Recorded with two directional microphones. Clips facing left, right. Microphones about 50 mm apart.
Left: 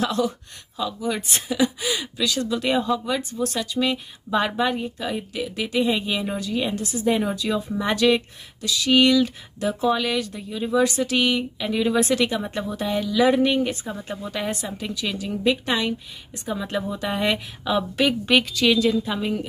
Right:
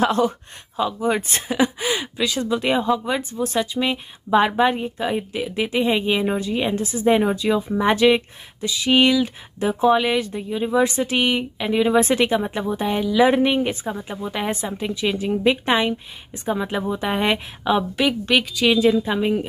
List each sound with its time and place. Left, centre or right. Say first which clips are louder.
0.0 s speech: right 4 dB; right; by 14.5 s centre
14.8 s speech: right 5 dB; right
18.3 s speech: right 1 dB; centre; by 19.4 s right